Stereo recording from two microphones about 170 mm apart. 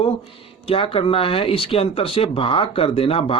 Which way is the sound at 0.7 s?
35° left (ahead or behind).